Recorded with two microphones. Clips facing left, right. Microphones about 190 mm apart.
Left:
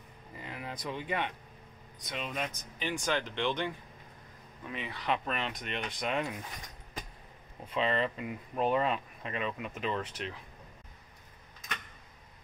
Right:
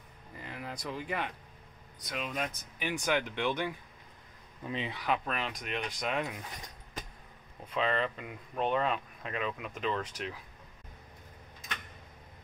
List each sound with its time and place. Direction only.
0.4 s a sound: centre (ahead or behind)
2.0 s speech: centre (ahead or behind)
4.6 s speech: 25° right (ahead or behind)
4.9 s speech: 5° right (ahead or behind)
7.7 s speech: centre (ahead or behind)